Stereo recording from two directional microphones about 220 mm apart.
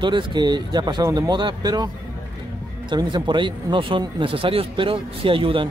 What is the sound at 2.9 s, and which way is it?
Speech, 20° right (ahead or behind).